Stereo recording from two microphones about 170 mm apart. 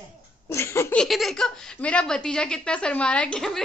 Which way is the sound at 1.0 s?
Centre (ahead or behind).